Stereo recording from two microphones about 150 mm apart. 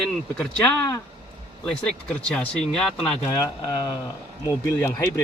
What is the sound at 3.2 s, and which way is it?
Speech, 25° left (ahead or behind).